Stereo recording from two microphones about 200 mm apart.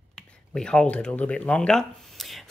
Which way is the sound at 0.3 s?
5° left (ahead or behind).